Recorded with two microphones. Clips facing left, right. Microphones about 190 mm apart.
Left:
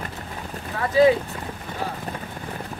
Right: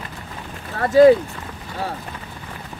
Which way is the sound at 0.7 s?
45° right (ahead or behind).